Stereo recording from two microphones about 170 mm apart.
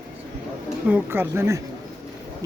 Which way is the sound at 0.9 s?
10° right (ahead or behind).